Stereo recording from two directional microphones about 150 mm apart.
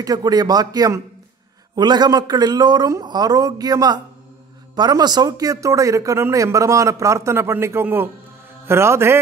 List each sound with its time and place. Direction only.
0.0 s a man's voice: 25° right (ahead or behind)